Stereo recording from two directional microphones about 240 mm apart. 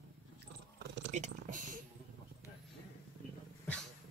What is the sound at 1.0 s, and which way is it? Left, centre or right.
Speech, right.